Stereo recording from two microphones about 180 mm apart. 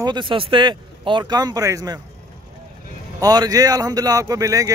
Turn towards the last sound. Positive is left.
turn(degrees=-20)  # may be behind; listen again after turning